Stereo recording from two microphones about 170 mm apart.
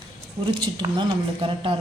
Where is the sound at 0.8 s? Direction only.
25° right (ahead or behind).